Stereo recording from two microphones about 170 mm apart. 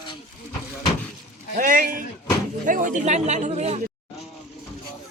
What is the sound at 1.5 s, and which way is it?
Speech, 55° right (ahead or behind).